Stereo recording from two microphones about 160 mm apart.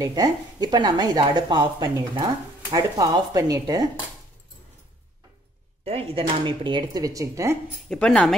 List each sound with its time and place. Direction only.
0.0 s a woman's voice: 25° right (ahead or behind)
6.1 s a woman's voice: 30° right (ahead or behind)
7.9 s speech: 5° left (ahead or behind)